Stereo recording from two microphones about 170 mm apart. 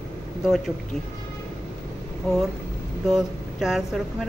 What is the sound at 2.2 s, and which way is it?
Speech, centre (ahead or behind).